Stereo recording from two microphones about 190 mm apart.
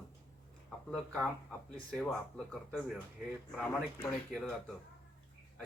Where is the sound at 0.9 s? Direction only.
5° left (ahead or behind).